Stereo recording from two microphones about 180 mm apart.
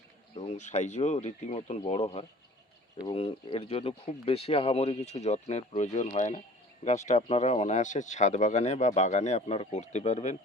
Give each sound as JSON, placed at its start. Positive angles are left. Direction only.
{"t": 0.3, "sound": "speech", "side_deg": 40}